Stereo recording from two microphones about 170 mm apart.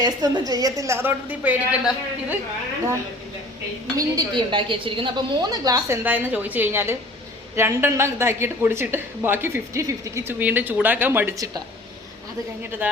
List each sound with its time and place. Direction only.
0.0 s a woman's voice: 25° right (ahead or behind)
3.9 s a woman's voice: 20° right (ahead or behind)
12.8 s speech: 10° right (ahead or behind)